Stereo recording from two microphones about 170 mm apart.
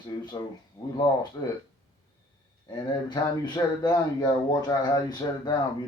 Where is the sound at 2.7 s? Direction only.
25° left (ahead or behind).